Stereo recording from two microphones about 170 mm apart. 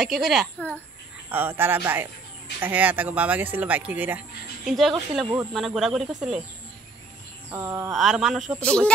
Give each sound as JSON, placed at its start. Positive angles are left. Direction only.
{"t": 0.0, "sound": "speech", "side_deg": 0}
{"t": 1.3, "sound": "speech", "side_deg": -10}
{"t": 7.5, "sound": "speech", "side_deg": -15}
{"t": 7.9, "sound": "speech", "side_deg": 0}